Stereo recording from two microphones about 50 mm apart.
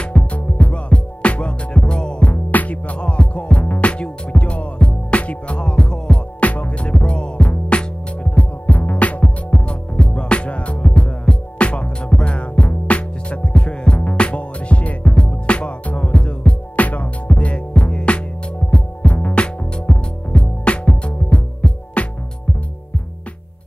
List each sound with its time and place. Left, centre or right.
0.0 s music: left
6.4 s music: left